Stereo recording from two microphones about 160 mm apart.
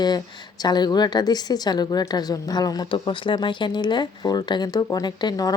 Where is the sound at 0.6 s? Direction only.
25° left (ahead or behind).